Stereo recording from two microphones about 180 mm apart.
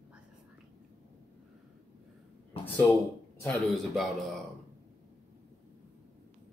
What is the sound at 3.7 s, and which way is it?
Speech, centre (ahead or behind).